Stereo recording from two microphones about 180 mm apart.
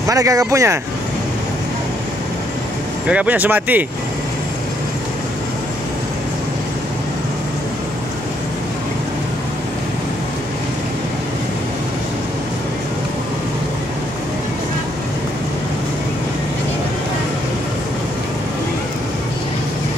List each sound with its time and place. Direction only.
0.1 s speech: 20° right (ahead or behind)
3.1 s speech: 10° right (ahead or behind)